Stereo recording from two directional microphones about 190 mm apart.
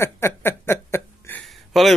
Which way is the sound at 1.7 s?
Centre (ahead or behind).